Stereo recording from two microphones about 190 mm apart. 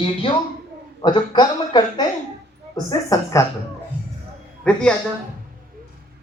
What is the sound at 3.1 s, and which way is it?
Speech, 15° left (ahead or behind).